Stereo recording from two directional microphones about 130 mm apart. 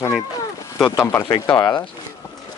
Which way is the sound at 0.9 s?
20° left (ahead or behind).